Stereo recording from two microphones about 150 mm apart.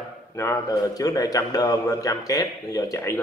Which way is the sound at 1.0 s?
25° left (ahead or behind).